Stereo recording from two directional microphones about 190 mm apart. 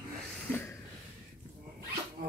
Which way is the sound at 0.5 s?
15° left (ahead or behind).